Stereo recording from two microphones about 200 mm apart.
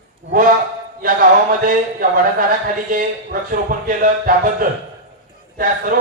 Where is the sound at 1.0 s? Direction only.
45° right (ahead or behind).